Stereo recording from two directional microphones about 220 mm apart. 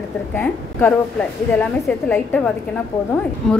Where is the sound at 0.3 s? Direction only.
10° left (ahead or behind).